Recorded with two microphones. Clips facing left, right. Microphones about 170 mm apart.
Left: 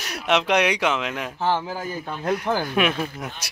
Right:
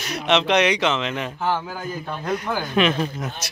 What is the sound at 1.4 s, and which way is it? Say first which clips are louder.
Speech: left 2 dB; 30° left (ahead or behind).